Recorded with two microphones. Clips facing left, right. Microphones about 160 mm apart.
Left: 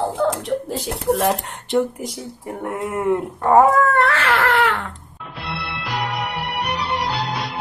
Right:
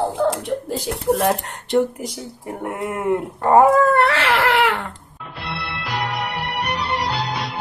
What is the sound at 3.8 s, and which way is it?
Speech, 75° right (ahead or behind).